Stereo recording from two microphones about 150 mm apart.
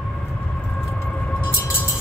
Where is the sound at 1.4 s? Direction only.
15° left (ahead or behind).